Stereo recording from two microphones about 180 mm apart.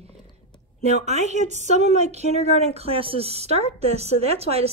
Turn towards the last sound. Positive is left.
turn(degrees=-35)  # may be behind; listen again after turning